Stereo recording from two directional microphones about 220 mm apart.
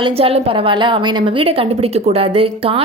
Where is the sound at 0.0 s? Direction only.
25° right (ahead or behind).